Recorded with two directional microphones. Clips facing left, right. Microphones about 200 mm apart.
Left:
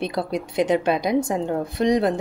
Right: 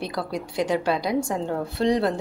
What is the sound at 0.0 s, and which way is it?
A woman's voice, 20° left (ahead or behind).